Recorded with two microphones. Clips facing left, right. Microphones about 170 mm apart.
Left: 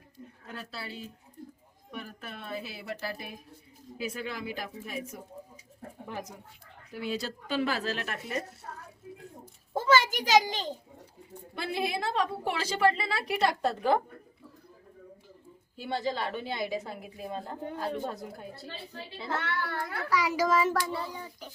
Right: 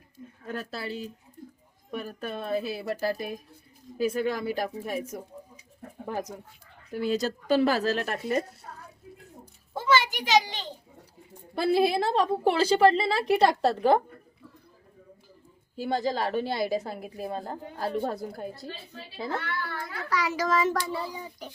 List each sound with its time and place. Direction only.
0.4 s a woman's voice: 45° right (ahead or behind)
6.9 s a woman's voice: 45° right (ahead or behind)
9.7 s a child's voice: 45° left (ahead or behind)
11.5 s a woman's voice: 35° right (ahead or behind)
15.7 s a woman's voice: 40° right (ahead or behind)
19.4 s a child's voice: 70° left (ahead or behind)
20.1 s a child's voice: 10° left (ahead or behind)
20.9 s a child's voice: 10° right (ahead or behind)